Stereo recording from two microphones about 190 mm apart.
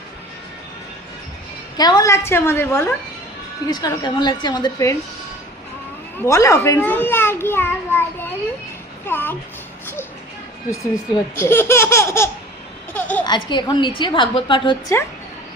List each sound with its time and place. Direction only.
1.8 s a child's voice: 20° left (ahead or behind)
6.1 s a child's voice: 15° left (ahead or behind)
10.7 s a child's voice: 15° left (ahead or behind)